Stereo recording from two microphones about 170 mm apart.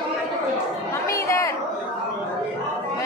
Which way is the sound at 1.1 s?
15° left (ahead or behind).